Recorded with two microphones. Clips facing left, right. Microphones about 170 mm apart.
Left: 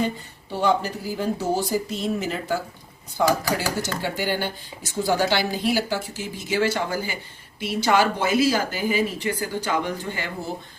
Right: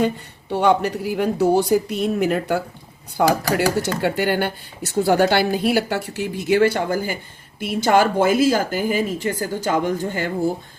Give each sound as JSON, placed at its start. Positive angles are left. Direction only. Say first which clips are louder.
{"t": 0.5, "sound": "speech", "louder": "right 5 dB", "side_deg": -65}